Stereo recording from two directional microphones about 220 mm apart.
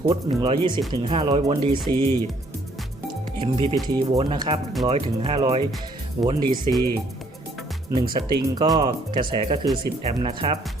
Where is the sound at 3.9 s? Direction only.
20° right (ahead or behind).